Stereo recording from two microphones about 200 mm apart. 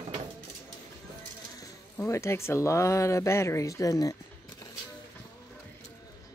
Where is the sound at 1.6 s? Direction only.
15° left (ahead or behind).